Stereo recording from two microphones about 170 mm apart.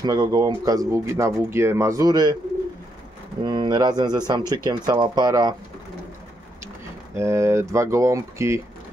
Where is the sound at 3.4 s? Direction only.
25° right (ahead or behind).